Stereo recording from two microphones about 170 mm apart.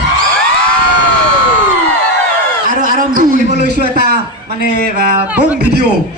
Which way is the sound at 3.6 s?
70° right (ahead or behind).